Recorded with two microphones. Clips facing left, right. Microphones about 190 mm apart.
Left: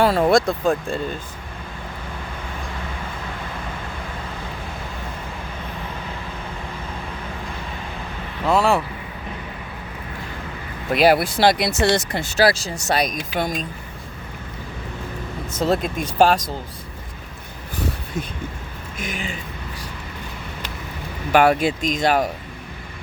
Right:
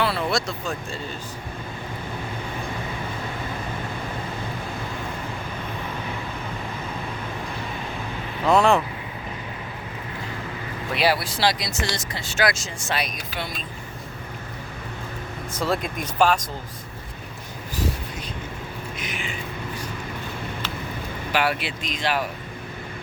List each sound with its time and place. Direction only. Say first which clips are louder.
0.0 s speech: left 8 dB; 45° left (ahead or behind)
8.4 s speech: even; 5° left (ahead or behind)
10.9 s speech: left 7 dB; 50° left (ahead or behind); by 11.9 s 65° left (ahead or behind)
12.3 s speech: left 5 dB; 35° left (ahead or behind)
15.5 s speech: left 5 dB; 25° left (ahead or behind)
18.9 s speech: left 7 dB; 45° left (ahead or behind)
21.3 s speech: left 9 dB; 45° left (ahead or behind)